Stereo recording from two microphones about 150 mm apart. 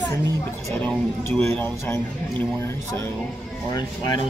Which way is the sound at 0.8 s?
10° left (ahead or behind).